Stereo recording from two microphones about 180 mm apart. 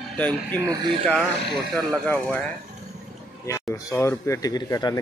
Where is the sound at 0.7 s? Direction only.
25° right (ahead or behind).